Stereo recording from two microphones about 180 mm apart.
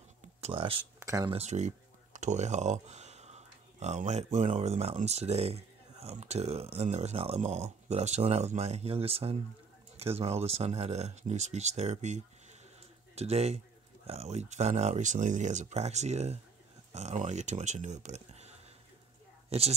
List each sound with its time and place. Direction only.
0.4 s speech: 30° right (ahead or behind)
0.9 s a sound: 20° right (ahead or behind)
1.3 s speech: 40° right (ahead or behind)